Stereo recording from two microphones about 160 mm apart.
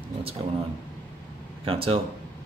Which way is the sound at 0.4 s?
35° right (ahead or behind).